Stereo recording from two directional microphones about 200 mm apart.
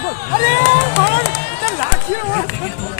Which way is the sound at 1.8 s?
40° left (ahead or behind).